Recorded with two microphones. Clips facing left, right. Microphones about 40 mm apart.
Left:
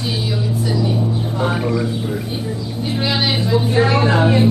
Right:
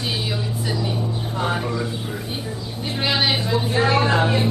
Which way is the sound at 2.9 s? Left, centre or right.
Centre.